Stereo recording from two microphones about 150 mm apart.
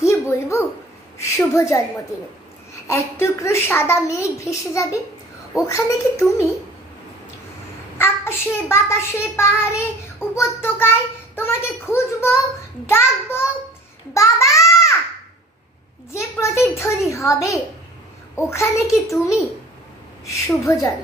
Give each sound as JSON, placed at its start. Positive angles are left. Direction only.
{"t": 0.0, "sound": "a sound", "side_deg": 20}
{"t": 1.1, "sound": "a woman's voice", "side_deg": 20}
{"t": 2.9, "sound": "a woman's voice", "side_deg": 20}
{"t": 8.0, "sound": "a child's voice", "side_deg": 15}
{"t": 16.1, "sound": "a woman's voice", "side_deg": 20}
{"t": 20.6, "sound": "a woman's voice", "side_deg": 20}